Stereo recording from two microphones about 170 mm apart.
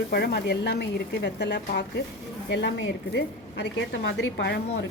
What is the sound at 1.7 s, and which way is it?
Speech, 70° left (ahead or behind).